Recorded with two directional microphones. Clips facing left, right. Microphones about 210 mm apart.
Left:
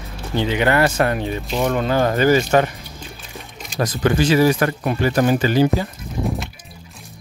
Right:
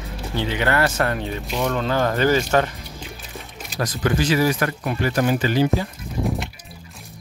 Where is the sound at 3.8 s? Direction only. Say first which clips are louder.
Left 4 dB; 25° left (ahead or behind).